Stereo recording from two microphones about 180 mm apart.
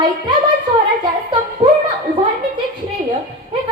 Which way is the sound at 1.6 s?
30° right (ahead or behind).